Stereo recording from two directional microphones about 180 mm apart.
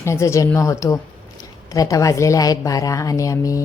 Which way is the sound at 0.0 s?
15° left (ahead or behind).